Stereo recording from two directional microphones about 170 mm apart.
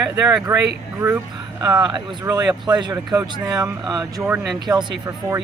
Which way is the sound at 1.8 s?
25° right (ahead or behind).